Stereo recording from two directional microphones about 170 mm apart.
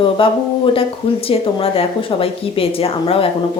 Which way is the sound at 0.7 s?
35° left (ahead or behind).